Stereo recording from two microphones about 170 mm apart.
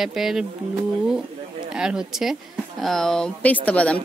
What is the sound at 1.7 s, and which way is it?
Speech, 5° right (ahead or behind).